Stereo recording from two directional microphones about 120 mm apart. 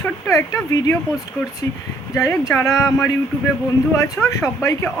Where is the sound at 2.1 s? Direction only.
25° left (ahead or behind).